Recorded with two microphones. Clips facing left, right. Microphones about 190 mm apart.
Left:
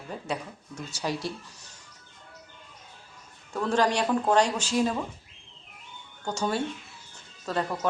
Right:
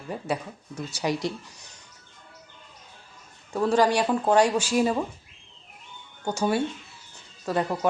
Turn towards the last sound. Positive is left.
turn(degrees=-10)  # may be behind; listen again after turning